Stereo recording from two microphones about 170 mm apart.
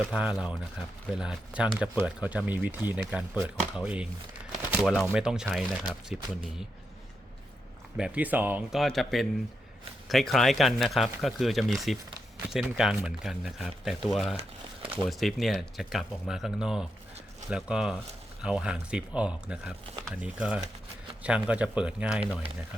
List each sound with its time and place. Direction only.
0.0 s speech: 5° right (ahead or behind)
4.5 s a sound: 5° right (ahead or behind)
5.1 s speech: 5° right (ahead or behind)
7.9 s speech: 5° right (ahead or behind)
14.3 s speech: 30° right (ahead or behind)
15.0 s speech: centre (ahead or behind)